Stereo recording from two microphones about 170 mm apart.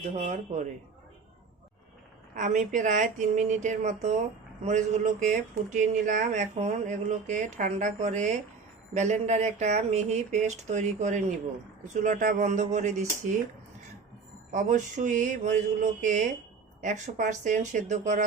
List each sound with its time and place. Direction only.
0.0 s speech: 40° right (ahead or behind)
2.3 s speech: 45° right (ahead or behind)
14.5 s speech: 45° right (ahead or behind)